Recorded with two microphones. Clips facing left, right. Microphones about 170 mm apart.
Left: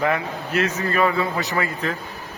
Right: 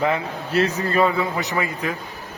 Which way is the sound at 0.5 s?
35° right (ahead or behind).